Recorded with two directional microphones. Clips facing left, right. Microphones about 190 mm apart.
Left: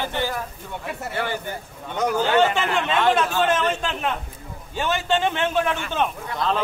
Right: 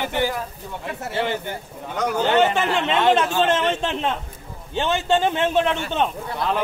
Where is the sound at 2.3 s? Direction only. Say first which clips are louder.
Right 3 dB; 20° right (ahead or behind).